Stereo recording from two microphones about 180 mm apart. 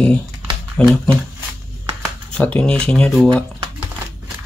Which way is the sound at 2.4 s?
5° left (ahead or behind).